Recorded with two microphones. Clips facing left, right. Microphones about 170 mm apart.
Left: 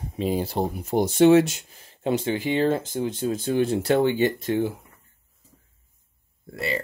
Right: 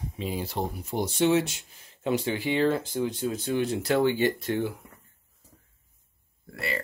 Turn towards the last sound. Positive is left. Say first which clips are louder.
# left 4 dB
turn(degrees=20)  # may be behind; listen again after turning